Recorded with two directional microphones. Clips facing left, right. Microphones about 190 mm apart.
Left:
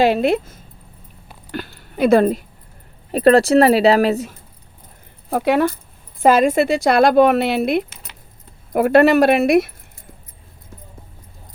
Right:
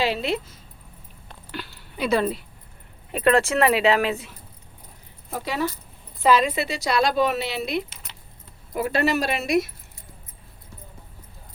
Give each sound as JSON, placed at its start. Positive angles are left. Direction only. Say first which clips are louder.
{"t": 0.0, "sound": "speech", "louder": "left 9 dB", "side_deg": 50}
{"t": 1.5, "sound": "a sound", "louder": "left 7 dB", "side_deg": 50}
{"t": 3.1, "sound": "speech", "louder": "left 8 dB", "side_deg": 35}
{"t": 5.3, "sound": "speech", "louder": "left 10 dB", "side_deg": 60}